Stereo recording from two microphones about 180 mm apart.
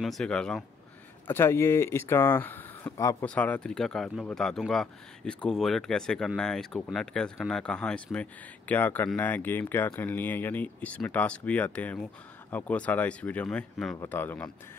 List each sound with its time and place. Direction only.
0.0 s speech: centre (ahead or behind)